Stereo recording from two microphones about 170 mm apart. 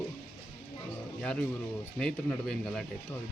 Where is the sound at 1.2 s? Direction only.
5° left (ahead or behind).